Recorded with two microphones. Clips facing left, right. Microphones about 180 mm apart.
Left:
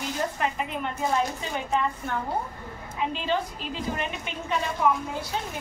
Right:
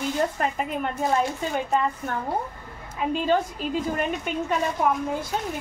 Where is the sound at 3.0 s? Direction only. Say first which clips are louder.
Right 5 dB; 45° right (ahead or behind).